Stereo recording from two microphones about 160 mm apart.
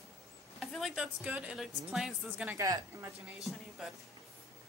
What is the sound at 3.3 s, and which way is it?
Speech, centre (ahead or behind).